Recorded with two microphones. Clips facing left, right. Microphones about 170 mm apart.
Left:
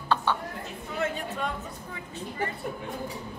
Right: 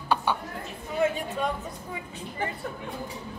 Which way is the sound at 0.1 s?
15° right (ahead or behind).